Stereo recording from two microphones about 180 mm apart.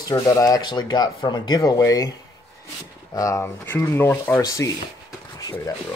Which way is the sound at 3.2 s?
15° left (ahead or behind).